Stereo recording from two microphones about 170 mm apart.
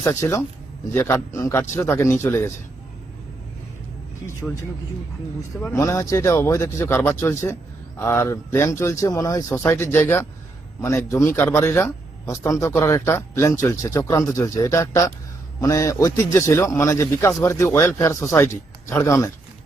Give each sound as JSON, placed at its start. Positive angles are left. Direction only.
{"t": 0.0, "sound": "a man's voice", "side_deg": 15}
{"t": 4.4, "sound": "a man's voice", "side_deg": 5}